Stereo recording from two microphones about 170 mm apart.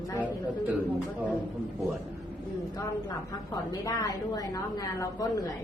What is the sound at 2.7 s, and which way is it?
A woman's voice, 20° left (ahead or behind).